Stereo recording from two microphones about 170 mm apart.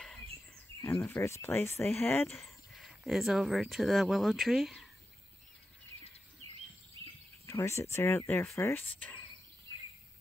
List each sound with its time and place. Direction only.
0.8 s speech: 15° left (ahead or behind)
2.3 s speech: centre (ahead or behind)
7.4 s speech: 15° left (ahead or behind)